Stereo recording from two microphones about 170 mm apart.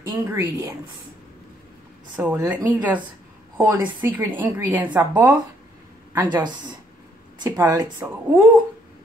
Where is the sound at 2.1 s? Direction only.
10° right (ahead or behind).